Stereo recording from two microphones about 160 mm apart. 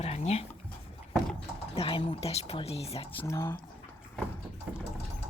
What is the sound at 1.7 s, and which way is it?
Speech, 35° left (ahead or behind).